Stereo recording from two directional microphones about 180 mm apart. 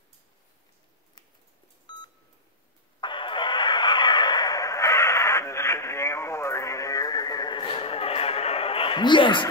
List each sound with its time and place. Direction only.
1.9 s beep: 25° left (ahead or behind)
3.0 s vehicle: 25° left (ahead or behind)